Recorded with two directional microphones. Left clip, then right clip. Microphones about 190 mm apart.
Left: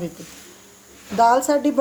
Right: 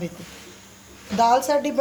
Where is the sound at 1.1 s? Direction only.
40° left (ahead or behind).